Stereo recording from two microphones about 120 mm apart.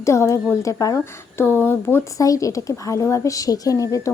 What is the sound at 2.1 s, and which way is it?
A woman's voice, 30° left (ahead or behind).